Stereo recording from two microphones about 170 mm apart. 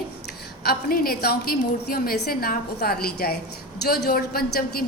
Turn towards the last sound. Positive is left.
turn(degrees=60)  # may be behind; listen again after turning